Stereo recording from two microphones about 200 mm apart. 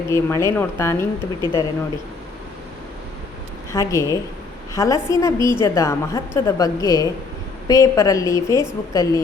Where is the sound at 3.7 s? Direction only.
15° left (ahead or behind).